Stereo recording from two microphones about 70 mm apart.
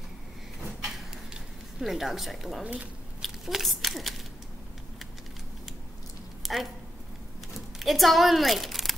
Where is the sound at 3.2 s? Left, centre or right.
Centre.